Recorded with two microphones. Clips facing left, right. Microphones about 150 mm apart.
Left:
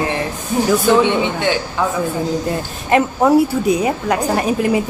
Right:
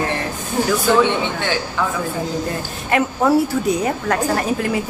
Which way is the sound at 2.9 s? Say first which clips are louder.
Left 3 dB; 15° left (ahead or behind).